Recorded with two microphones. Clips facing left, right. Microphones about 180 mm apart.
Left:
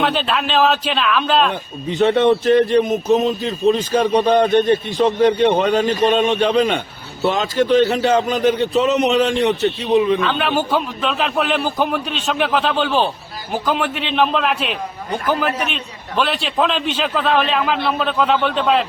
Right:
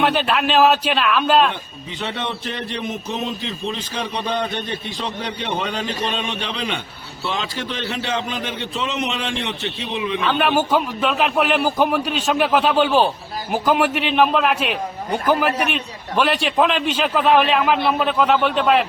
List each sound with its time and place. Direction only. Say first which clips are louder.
0.1 s a man's voice: right 1 dB; 10° right (ahead or behind)
1.5 s a man's voice: left 5 dB; 45° left (ahead or behind)
10.2 s a man's voice: right 1 dB; 10° right (ahead or behind)